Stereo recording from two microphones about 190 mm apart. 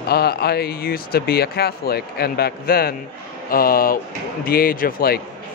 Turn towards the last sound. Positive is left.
turn(degrees=50)  # may be behind; listen again after turning